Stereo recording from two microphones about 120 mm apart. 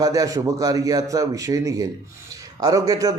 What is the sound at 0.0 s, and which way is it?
A man's voice, 30° right (ahead or behind).